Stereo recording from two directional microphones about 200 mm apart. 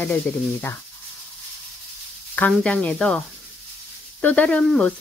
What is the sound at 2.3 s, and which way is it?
Speech, 5° left (ahead or behind).